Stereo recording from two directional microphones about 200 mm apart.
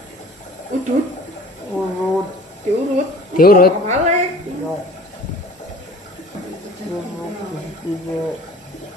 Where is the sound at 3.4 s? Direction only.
45° left (ahead or behind).